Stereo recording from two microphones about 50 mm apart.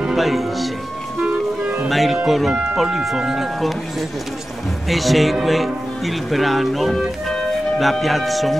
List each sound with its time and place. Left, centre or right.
0.1 s speech: centre
1.2 s music: right
1.9 s speech: centre
4.8 s speech: centre